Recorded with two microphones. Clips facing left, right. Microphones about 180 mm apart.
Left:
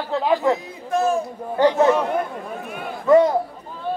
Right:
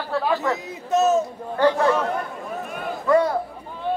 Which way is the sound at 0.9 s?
20° right (ahead or behind).